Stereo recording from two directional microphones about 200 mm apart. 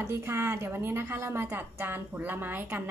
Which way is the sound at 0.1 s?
15° right (ahead or behind).